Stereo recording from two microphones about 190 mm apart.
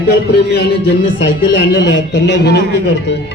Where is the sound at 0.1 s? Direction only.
60° left (ahead or behind).